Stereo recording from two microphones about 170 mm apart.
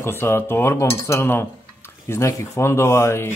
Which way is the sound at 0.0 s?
15° left (ahead or behind).